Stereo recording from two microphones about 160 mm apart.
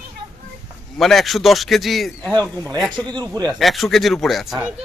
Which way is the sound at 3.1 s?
25° right (ahead or behind).